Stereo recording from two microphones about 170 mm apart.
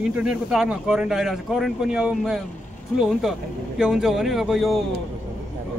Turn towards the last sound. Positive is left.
turn(degrees=0)  # may be behind; listen again after turning